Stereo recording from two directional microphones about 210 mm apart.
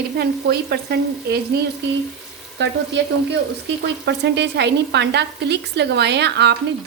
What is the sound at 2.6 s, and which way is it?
Speech, 55° right (ahead or behind).